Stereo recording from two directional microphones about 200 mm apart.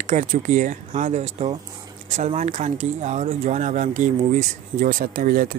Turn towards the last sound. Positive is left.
turn(degrees=-45)  # may be behind; listen again after turning